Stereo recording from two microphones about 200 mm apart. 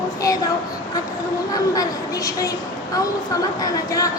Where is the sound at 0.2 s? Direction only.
15° left (ahead or behind).